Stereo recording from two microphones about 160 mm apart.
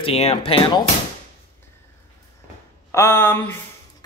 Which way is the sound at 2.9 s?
15° left (ahead or behind).